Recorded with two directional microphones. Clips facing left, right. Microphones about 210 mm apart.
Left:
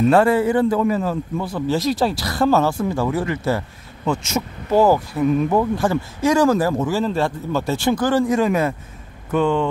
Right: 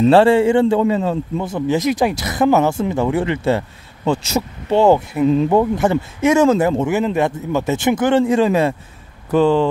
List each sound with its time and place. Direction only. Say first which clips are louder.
0.0 s a man's voice: right 4 dB; 30° right (ahead or behind)